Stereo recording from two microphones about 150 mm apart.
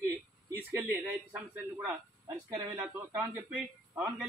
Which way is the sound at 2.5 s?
15° right (ahead or behind).